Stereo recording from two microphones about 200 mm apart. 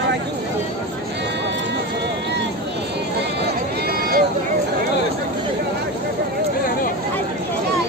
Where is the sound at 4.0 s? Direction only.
50° right (ahead or behind).